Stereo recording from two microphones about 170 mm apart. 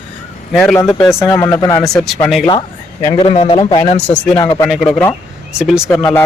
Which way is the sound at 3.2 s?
35° left (ahead or behind).